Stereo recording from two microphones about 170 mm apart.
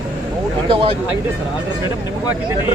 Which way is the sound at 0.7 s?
35° right (ahead or behind).